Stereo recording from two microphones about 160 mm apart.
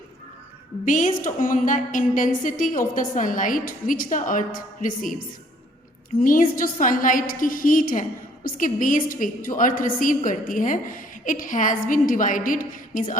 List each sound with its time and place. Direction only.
0.9 s a woman's voice: 55° left (ahead or behind)
6.1 s a woman's voice: 60° left (ahead or behind)